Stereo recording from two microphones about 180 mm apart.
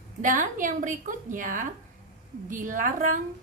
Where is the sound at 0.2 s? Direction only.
45° right (ahead or behind).